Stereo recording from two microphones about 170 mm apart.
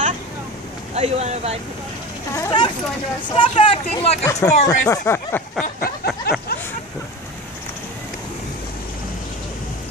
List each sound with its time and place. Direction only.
0.9 s speech: 40° right (ahead or behind)
2.3 s speech: 20° left (ahead or behind)
4.2 s speech: 20° left (ahead or behind)
5.8 s a sound: 65° left (ahead or behind)